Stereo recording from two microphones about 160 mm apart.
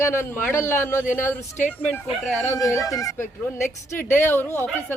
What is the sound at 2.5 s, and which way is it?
A woman's voice, 20° left (ahead or behind).